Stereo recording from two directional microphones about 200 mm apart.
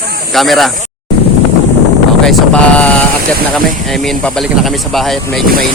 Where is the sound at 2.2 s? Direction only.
5° left (ahead or behind).